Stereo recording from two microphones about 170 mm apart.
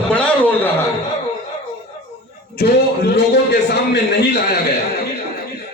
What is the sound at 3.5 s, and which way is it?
Speech, 70° left (ahead or behind).